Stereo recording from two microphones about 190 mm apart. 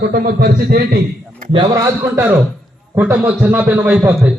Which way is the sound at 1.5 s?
20° right (ahead or behind).